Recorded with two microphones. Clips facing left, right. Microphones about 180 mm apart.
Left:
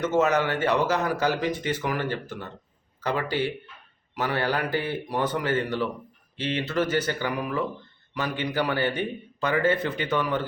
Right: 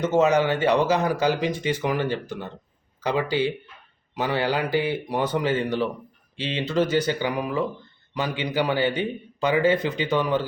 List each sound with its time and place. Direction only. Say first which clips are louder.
0.3 s a man's voice: right 3 dB; 15° right (ahead or behind)